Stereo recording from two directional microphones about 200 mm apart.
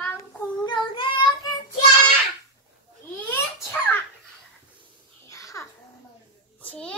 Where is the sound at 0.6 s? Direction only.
25° left (ahead or behind).